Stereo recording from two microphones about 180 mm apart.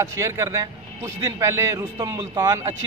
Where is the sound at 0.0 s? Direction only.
20° right (ahead or behind).